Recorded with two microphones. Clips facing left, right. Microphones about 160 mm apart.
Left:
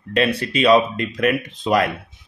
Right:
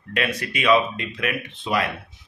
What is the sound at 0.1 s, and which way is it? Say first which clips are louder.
Speech: left 6 dB; 30° left (ahead or behind).